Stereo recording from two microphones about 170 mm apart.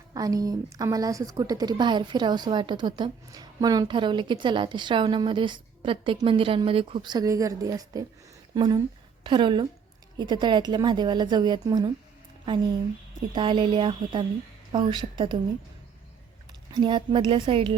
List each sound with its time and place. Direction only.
0.1 s a woman's voice: 20° right (ahead or behind)
13.3 s a woman's voice: 30° right (ahead or behind)
16.7 s a woman's voice: 30° right (ahead or behind)